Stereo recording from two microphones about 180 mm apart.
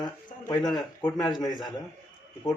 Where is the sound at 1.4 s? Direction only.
25° left (ahead or behind).